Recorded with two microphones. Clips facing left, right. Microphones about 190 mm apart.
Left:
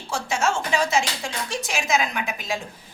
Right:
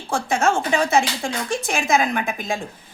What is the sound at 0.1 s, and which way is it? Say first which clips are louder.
A woman's voice: right 4 dB; 55° right (ahead or behind).